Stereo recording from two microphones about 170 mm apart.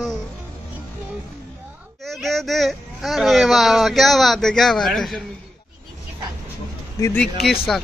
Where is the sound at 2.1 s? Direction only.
Centre (ahead or behind).